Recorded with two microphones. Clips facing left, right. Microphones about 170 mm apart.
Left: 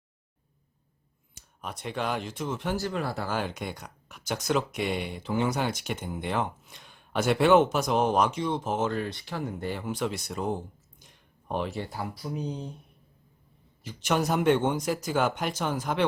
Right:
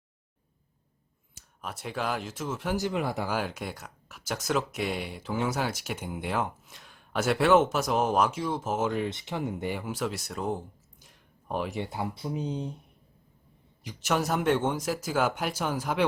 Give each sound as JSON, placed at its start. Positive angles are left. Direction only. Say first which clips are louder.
{"t": 1.4, "sound": "speech", "louder": "left 1 dB", "side_deg": -5}
{"t": 2.7, "sound": "speech", "louder": "right 1 dB", "side_deg": -15}
{"t": 8.9, "sound": "speech", "louder": "right 1 dB", "side_deg": -20}
{"t": 9.8, "sound": "speech", "louder": "left 1 dB", "side_deg": -5}
{"t": 11.0, "sound": "a sound", "louder": "even", "side_deg": -5}
{"t": 11.7, "sound": "speech", "louder": "right 2 dB", "side_deg": -20}
{"t": 14.0, "sound": "speech", "louder": "left 2 dB", "side_deg": 0}